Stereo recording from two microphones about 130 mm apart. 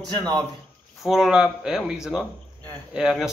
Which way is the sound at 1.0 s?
5° right (ahead or behind).